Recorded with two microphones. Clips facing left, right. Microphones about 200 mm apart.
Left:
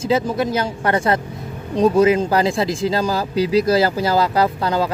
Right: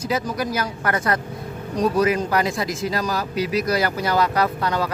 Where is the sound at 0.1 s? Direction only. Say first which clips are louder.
Left 6 dB; 25° left (ahead or behind).